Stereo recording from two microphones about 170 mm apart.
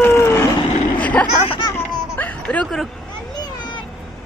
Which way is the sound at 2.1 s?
10° left (ahead or behind).